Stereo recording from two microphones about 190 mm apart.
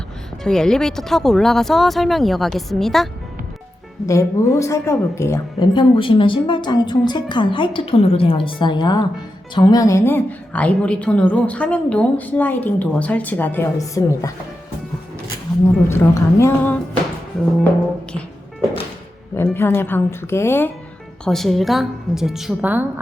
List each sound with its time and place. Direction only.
0.4 s speech: 5° left (ahead or behind)
4.0 s a woman's voice: 15° left (ahead or behind)
5.7 s a woman's voice: 25° left (ahead or behind)
15.9 s a woman's voice: 15° left (ahead or behind)
19.4 s a woman's voice: 10° left (ahead or behind)
21.2 s speech: centre (ahead or behind)